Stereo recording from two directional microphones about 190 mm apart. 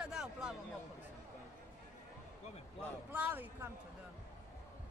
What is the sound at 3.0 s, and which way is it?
Speech, 10° right (ahead or behind).